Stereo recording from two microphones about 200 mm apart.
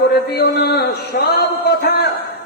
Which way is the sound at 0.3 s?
55° left (ahead or behind).